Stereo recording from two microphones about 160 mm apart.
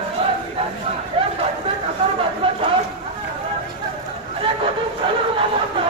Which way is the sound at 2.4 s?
35° right (ahead or behind).